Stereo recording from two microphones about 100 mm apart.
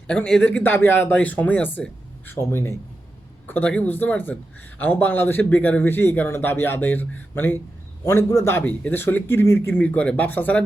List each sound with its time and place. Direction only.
0.1 s speech: 10° left (ahead or behind)